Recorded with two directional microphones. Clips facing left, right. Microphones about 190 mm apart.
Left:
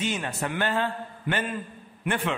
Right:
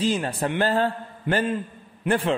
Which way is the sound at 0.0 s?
30° right (ahead or behind).